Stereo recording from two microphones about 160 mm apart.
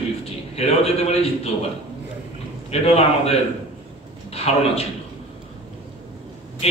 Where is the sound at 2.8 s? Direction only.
40° left (ahead or behind).